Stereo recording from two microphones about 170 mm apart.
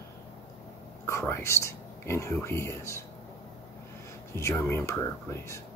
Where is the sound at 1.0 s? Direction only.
15° left (ahead or behind).